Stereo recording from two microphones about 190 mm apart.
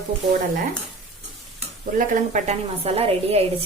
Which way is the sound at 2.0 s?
35° right (ahead or behind).